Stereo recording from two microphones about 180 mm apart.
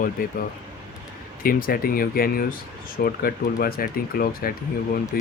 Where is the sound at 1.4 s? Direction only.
55° left (ahead or behind).